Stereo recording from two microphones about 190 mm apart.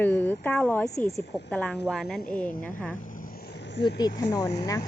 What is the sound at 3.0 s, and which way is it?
Vehicle, 45° left (ahead or behind).